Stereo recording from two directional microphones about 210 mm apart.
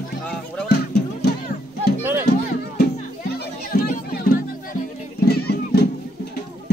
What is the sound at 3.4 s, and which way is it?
Music, 45° left (ahead or behind).